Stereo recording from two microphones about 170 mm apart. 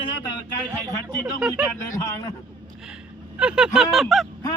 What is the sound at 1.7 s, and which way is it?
Speech, 20° left (ahead or behind).